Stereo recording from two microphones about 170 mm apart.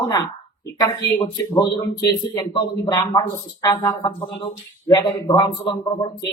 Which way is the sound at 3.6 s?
20° left (ahead or behind).